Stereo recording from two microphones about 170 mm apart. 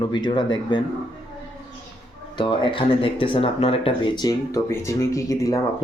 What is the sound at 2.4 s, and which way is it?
Speech, 30° left (ahead or behind).